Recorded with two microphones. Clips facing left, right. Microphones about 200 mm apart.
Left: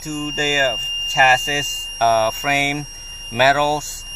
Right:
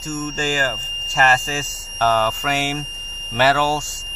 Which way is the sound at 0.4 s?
10° left (ahead or behind).